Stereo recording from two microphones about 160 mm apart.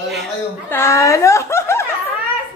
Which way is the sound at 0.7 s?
15° left (ahead or behind).